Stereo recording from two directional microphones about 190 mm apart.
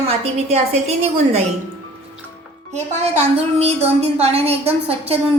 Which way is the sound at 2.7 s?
35° right (ahead or behind).